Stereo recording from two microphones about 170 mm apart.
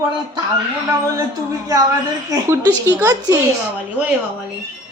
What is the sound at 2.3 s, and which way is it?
A woman's voice, 20° right (ahead or behind).